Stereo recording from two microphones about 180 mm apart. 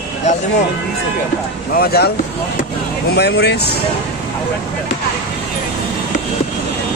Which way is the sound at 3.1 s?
65° left (ahead or behind).